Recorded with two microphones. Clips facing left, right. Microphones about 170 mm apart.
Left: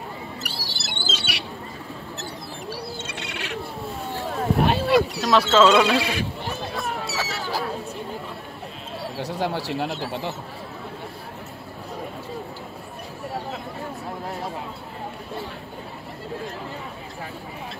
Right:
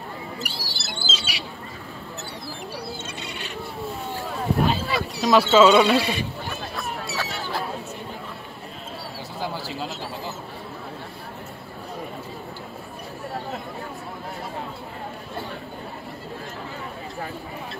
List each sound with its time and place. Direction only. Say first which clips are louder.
0.4 s a sound: right 1 dB; centre (ahead or behind)
3.0 s bird: left 1 dB; 75° left (ahead or behind)
3.8 s a sound: right 2 dB; centre (ahead or behind)
4.8 s horse: left 4 dB; centre (ahead or behind)
9.4 s speech: left 4 dB; 75° left (ahead or behind)
9.8 s speech: left 4 dB; centre (ahead or behind)